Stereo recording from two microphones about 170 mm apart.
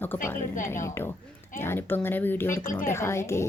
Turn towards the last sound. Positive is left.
turn(degrees=15)  # may be behind; listen again after turning